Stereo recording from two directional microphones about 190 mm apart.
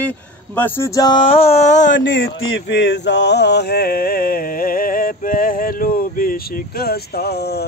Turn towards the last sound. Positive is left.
turn(degrees=55)  # may be behind; listen again after turning